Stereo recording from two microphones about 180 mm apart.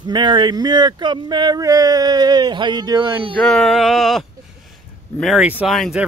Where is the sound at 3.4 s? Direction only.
5° left (ahead or behind).